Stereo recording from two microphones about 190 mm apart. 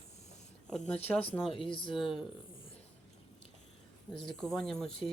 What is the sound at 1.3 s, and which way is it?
Speech, 10° left (ahead or behind).